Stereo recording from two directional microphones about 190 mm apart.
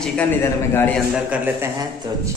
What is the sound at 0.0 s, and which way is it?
Speech, 5° left (ahead or behind).